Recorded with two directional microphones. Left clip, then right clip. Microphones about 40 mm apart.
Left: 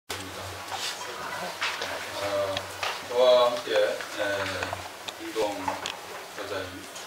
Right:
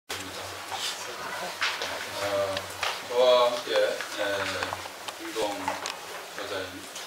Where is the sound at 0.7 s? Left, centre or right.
Centre.